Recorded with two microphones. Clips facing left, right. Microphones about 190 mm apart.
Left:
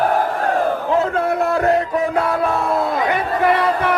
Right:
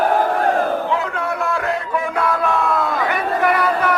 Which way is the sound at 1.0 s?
40° left (ahead or behind).